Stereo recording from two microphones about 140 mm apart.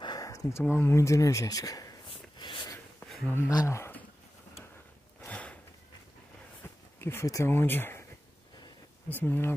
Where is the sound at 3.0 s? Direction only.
Centre (ahead or behind).